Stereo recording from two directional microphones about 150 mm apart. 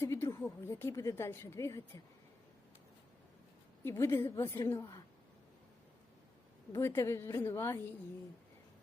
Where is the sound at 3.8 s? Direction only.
15° left (ahead or behind).